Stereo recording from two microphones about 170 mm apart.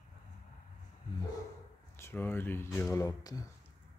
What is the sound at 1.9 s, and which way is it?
Speech, 15° left (ahead or behind).